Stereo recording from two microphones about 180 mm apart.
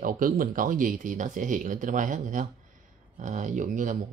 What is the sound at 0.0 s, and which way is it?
Speech, 50° right (ahead or behind).